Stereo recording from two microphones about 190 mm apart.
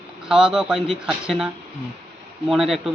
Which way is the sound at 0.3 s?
5° right (ahead or behind).